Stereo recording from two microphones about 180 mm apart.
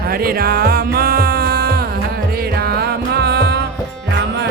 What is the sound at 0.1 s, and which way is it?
Music, 55° right (ahead or behind).